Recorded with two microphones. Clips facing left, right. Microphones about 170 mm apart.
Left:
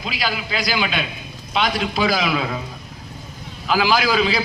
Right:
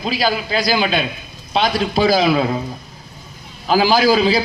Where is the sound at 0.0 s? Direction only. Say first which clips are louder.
Right 6 dB; 35° right (ahead or behind).